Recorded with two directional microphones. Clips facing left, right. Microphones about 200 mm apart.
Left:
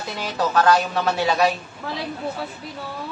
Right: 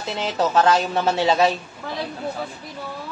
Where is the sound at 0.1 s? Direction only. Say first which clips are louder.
Right 2 dB; 25° right (ahead or behind).